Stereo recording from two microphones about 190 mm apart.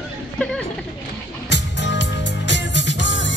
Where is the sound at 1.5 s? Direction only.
70° left (ahead or behind).